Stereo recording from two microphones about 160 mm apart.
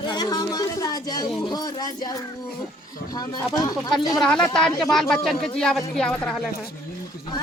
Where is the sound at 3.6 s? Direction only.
25° left (ahead or behind).